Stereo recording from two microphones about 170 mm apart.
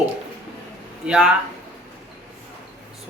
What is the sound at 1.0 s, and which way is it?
Speech, 5° right (ahead or behind).